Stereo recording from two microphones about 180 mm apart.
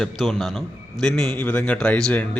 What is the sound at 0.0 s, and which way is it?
A man's voice, centre (ahead or behind).